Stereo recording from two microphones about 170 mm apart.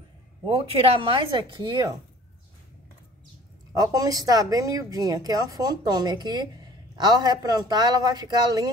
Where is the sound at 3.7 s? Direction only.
20° right (ahead or behind).